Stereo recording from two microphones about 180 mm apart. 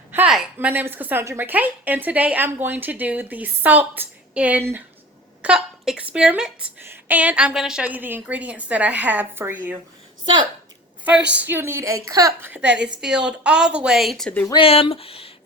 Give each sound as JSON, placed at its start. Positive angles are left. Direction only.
{"t": 0.1, "sound": "a woman's voice", "side_deg": -5}
{"t": 10.2, "sound": "a woman's voice", "side_deg": -25}
{"t": 11.0, "sound": "a woman's voice", "side_deg": -5}
{"t": 14.4, "sound": "speech", "side_deg": 25}